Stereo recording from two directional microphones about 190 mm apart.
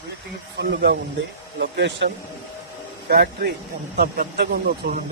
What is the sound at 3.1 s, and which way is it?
Speech, 60° right (ahead or behind).